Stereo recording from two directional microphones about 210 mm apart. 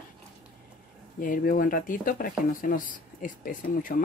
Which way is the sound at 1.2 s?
40° left (ahead or behind).